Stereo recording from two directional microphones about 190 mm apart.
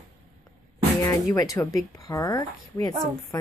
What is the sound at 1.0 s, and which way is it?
Speech, 15° left (ahead or behind).